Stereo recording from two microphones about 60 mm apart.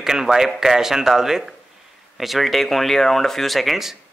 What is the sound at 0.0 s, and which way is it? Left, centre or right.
Speech, centre.